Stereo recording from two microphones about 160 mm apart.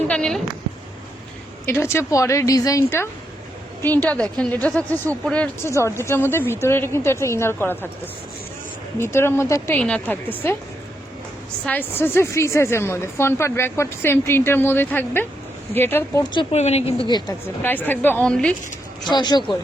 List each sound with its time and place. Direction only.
0.1 s a woman's voice: 5° left (ahead or behind)
1.6 s a woman's voice: 15° left (ahead or behind)
9.0 s a woman's voice: 15° left (ahead or behind)
11.6 s a woman's voice: 10° left (ahead or behind)
16.5 s a woman's voice: 45° left (ahead or behind); by 17.3 s 25° left (ahead or behind)
17.6 s a woman's voice: 10° left (ahead or behind)
19.1 s speech: 30° left (ahead or behind)